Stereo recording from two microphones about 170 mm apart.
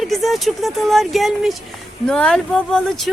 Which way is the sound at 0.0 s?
Centre (ahead or behind).